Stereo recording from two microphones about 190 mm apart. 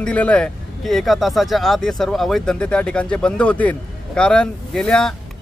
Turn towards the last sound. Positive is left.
turn(degrees=5)  # may be behind; listen again after turning